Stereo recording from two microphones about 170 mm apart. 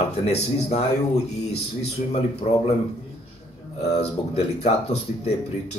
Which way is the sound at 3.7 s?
35° left (ahead or behind).